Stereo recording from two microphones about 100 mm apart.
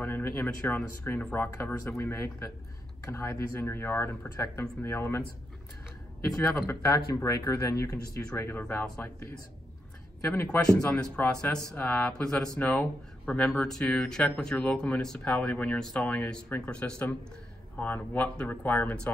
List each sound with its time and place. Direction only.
0.0 s speech: 20° left (ahead or behind)
6.3 s speech: 25° left (ahead or behind)
10.2 s speech: 25° left (ahead or behind)
10.6 s speech: 10° left (ahead or behind)